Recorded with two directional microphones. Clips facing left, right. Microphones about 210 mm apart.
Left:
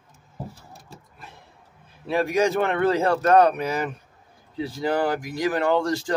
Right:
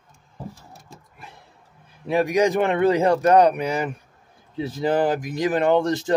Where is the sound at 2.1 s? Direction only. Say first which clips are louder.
Right 2 dB; 15° right (ahead or behind).